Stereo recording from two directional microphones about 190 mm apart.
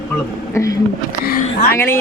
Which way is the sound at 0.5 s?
15° left (ahead or behind).